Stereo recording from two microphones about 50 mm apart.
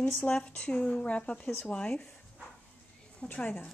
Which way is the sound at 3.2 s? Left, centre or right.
Left.